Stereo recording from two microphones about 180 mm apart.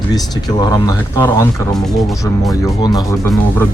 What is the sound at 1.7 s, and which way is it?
Speech, centre (ahead or behind).